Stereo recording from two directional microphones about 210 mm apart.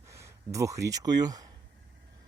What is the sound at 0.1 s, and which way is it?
Speech, 15° right (ahead or behind).